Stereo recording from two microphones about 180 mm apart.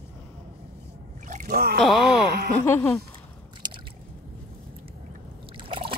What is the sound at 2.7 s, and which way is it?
Speech, 15° left (ahead or behind).